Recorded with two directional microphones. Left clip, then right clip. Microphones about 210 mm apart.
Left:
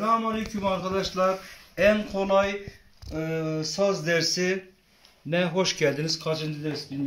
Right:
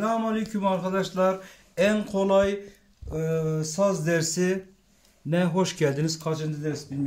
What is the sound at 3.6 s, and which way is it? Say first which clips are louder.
Speech: left 2 dB; 45° right (ahead or behind).